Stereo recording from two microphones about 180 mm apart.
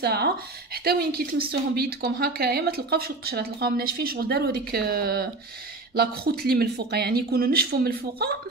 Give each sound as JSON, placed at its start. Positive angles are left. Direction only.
{"t": 0.0, "sound": "speech", "side_deg": -60}
{"t": 6.4, "sound": "speech", "side_deg": -60}